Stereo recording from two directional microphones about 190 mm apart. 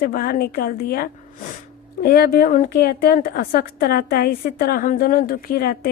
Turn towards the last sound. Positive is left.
turn(degrees=55)  # may be behind; listen again after turning